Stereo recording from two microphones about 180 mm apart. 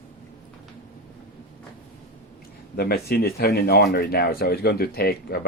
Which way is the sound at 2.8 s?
60° left (ahead or behind).